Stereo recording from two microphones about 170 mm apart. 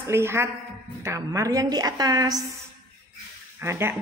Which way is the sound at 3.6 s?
15° right (ahead or behind).